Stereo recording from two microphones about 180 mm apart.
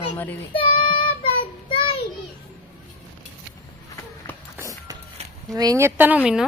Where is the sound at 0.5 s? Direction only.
30° left (ahead or behind).